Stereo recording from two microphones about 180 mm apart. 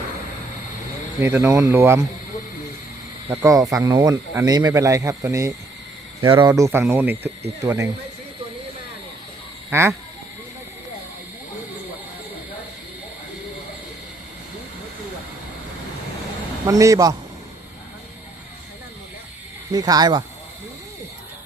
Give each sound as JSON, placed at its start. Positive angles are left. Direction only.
{"t": 1.2, "sound": "speech", "side_deg": -15}
{"t": 3.4, "sound": "speech", "side_deg": -15}
{"t": 9.6, "sound": "speech", "side_deg": -15}
{"t": 16.6, "sound": "a man's voice", "side_deg": -20}
{"t": 19.7, "sound": "a man's voice", "side_deg": -20}